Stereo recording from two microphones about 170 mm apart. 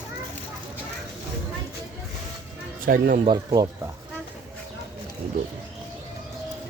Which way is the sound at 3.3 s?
25° right (ahead or behind).